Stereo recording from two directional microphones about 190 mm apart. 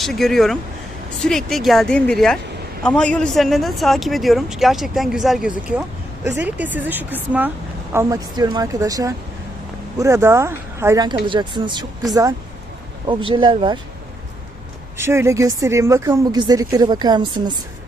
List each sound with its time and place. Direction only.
0.0 s a man's voice: centre (ahead or behind); by 11.9 s 25° right (ahead or behind)
13.1 s speech: 25° right (ahead or behind)
14.9 s a woman's voice: 15° right (ahead or behind)